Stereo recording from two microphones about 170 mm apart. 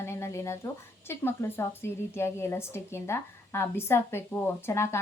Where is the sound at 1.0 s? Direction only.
15° left (ahead or behind).